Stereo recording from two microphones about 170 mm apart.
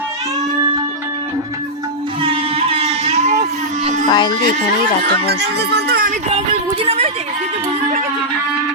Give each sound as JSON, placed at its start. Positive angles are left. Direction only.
{"t": 2.2, "sound": "a sound", "side_deg": -35}
{"t": 4.1, "sound": "speech", "side_deg": 25}
{"t": 5.5, "sound": "speech", "side_deg": -70}
{"t": 6.8, "sound": "speech", "side_deg": -35}